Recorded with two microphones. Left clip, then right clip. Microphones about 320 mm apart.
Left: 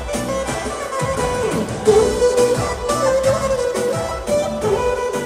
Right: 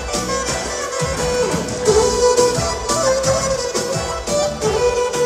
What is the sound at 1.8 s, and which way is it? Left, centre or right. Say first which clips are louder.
Music: even; left.